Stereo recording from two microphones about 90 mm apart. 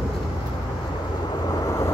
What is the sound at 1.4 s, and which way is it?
Vehicle, 45° left (ahead or behind).